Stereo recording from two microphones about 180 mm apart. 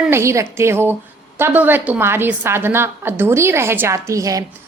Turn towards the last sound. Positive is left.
turn(degrees=-20)  # may be behind; listen again after turning